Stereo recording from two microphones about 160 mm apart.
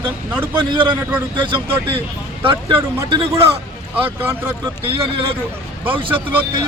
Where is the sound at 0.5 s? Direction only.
30° right (ahead or behind).